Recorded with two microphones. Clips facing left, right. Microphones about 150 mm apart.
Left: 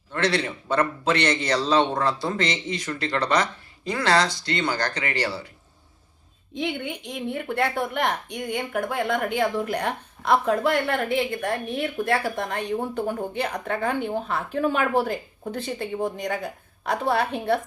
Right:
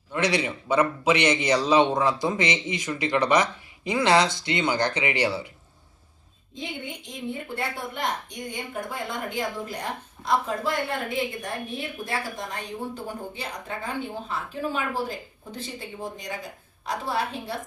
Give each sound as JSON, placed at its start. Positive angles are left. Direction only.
{"t": 0.1, "sound": "a man's voice", "side_deg": -15}
{"t": 6.5, "sound": "a woman's voice", "side_deg": 65}